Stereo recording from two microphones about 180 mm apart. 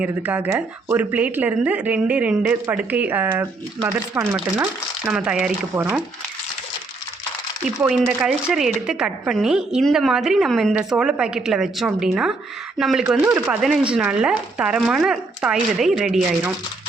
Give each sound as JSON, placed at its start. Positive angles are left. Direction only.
{"t": 0.0, "sound": "speech", "side_deg": -10}
{"t": 7.8, "sound": "speech", "side_deg": -10}